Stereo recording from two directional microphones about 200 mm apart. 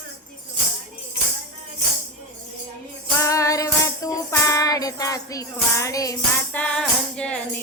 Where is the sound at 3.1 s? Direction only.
15° left (ahead or behind).